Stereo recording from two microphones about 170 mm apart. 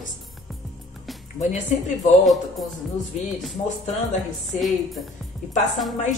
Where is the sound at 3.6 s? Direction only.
30° left (ahead or behind).